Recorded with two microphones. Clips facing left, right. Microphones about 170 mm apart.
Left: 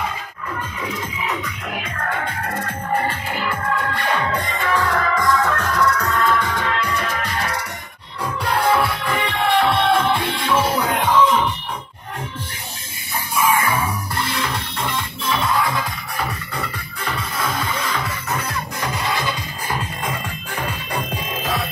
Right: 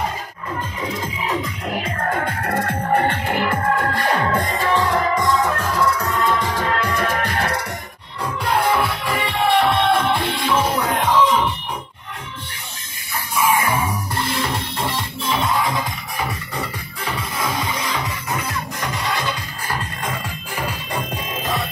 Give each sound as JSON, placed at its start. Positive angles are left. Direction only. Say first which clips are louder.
{"t": 0.8, "sound": "music", "louder": "right 2 dB", "side_deg": -30}
{"t": 2.1, "sound": "music", "louder": "right 3 dB", "side_deg": -50}
{"t": 3.5, "sound": "music", "louder": "right 3 dB", "side_deg": -45}
{"t": 4.6, "sound": "music", "louder": "right 1 dB", "side_deg": -20}
{"t": 6.4, "sound": "music", "louder": "right 1 dB", "side_deg": -35}
{"t": 6.8, "sound": "music", "louder": "right 3 dB", "side_deg": -50}
{"t": 8.5, "sound": "music", "louder": "even", "side_deg": 0}
{"t": 13.5, "sound": "music", "louder": "right 1 dB", "side_deg": -15}
{"t": 16.2, "sound": "music", "louder": "even", "side_deg": -10}
{"t": 18.8, "sound": "music", "louder": "left 1 dB", "side_deg": 5}